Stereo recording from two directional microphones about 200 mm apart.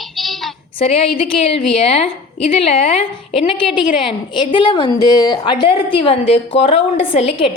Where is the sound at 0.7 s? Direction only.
25° left (ahead or behind).